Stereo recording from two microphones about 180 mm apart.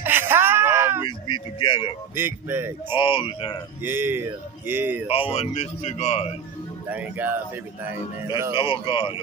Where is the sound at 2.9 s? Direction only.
30° left (ahead or behind).